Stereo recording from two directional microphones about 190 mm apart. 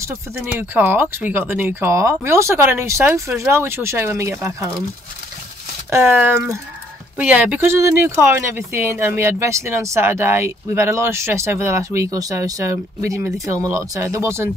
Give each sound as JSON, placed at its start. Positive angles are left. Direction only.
{"t": 0.0, "sound": "speech", "side_deg": -10}
{"t": 5.9, "sound": "speech", "side_deg": -10}